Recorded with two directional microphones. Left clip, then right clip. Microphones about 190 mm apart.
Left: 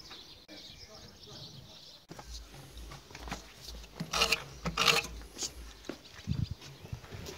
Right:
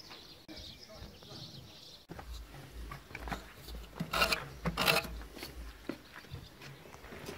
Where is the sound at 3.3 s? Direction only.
Centre (ahead or behind).